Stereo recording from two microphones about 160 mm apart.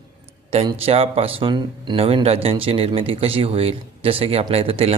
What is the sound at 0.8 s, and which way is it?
Speech, 35° right (ahead or behind).